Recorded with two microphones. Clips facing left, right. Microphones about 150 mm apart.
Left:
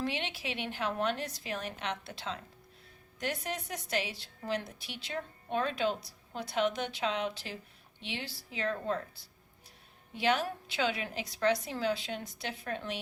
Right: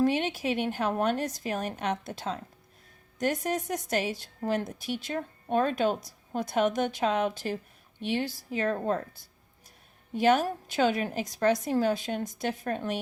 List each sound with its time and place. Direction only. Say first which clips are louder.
0.0 s a woman's voice: right 10 dB; 45° right (ahead or behind)